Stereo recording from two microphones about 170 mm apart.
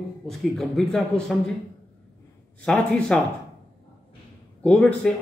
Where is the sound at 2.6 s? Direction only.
5° left (ahead or behind).